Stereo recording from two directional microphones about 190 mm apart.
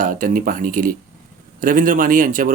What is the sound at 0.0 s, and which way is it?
Speech, 45° right (ahead or behind).